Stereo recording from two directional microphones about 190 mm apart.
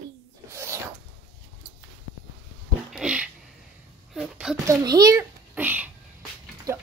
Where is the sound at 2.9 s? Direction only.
5° right (ahead or behind).